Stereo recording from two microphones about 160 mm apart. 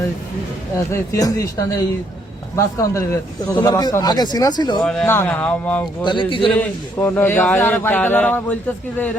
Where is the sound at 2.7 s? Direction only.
20° left (ahead or behind).